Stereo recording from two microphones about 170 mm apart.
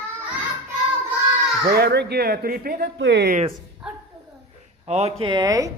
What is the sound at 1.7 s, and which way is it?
Speech, 75° right (ahead or behind).